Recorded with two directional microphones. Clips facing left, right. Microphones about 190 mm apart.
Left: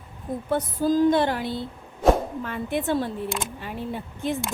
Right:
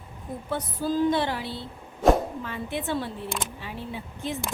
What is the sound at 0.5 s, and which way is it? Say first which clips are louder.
Female singing: left 5 dB; 45° left (ahead or behind).